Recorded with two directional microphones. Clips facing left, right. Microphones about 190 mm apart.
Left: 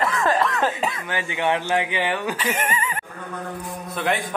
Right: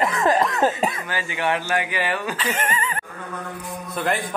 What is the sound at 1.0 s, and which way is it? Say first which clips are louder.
Speech: left 1 dB; 20° left (ahead or behind).